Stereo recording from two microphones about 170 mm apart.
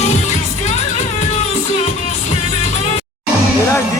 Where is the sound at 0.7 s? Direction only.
40° left (ahead or behind).